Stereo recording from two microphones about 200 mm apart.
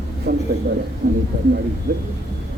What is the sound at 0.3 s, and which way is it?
Speech, 50° right (ahead or behind).